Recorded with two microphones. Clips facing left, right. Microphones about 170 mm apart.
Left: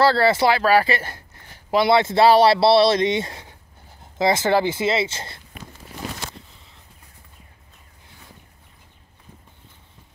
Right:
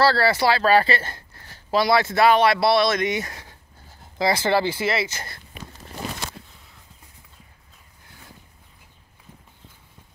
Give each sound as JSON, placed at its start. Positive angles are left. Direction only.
{"t": 0.0, "sound": "speech", "side_deg": 20}